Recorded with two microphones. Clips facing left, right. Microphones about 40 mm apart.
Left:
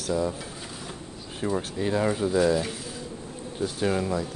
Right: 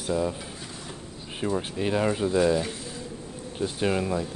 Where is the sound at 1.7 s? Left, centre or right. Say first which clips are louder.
Even; right; by 2.8 s centre.